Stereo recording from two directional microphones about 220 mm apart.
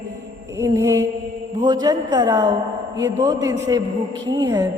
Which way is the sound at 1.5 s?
20° right (ahead or behind).